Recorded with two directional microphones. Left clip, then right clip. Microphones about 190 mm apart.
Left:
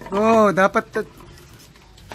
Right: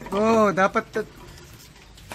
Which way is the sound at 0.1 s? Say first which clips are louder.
Left 4 dB; 20° left (ahead or behind).